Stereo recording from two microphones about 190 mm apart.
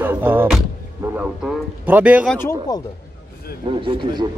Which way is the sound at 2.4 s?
20° left (ahead or behind).